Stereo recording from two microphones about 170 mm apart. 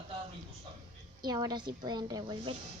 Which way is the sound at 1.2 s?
25° right (ahead or behind).